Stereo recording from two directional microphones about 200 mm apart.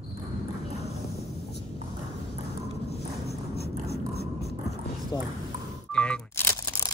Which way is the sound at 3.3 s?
50° left (ahead or behind).